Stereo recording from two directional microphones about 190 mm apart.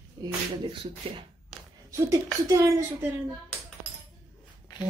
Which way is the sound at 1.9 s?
15° right (ahead or behind).